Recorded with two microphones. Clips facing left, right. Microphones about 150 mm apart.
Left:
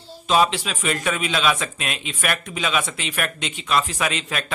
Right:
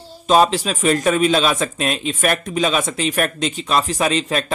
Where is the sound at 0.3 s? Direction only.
40° right (ahead or behind).